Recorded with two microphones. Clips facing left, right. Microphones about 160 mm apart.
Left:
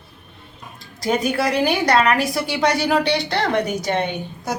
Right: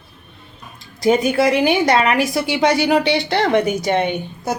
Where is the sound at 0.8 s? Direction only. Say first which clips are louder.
Right 5 dB; 20° right (ahead or behind).